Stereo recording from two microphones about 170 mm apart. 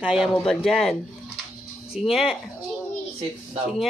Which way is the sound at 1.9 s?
Centre (ahead or behind).